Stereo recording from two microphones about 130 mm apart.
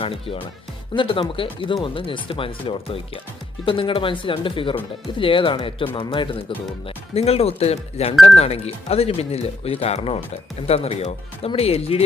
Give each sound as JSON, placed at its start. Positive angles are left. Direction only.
{"t": 0.0, "sound": "speech", "side_deg": 45}
{"t": 6.8, "sound": "speech", "side_deg": 50}